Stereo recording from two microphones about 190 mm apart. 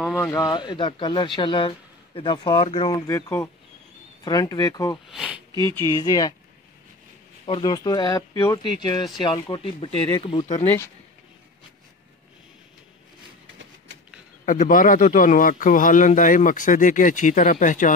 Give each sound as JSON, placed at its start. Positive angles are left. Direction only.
{"t": 0.0, "sound": "speech", "side_deg": 0}
{"t": 0.3, "sound": "speech", "side_deg": 20}
{"t": 5.0, "sound": "speech", "side_deg": -5}
{"t": 5.6, "sound": "speech", "side_deg": -25}
{"t": 5.9, "sound": "speech", "side_deg": 20}
{"t": 7.4, "sound": "speech", "side_deg": 30}
{"t": 14.4, "sound": "a man's voice", "side_deg": 45}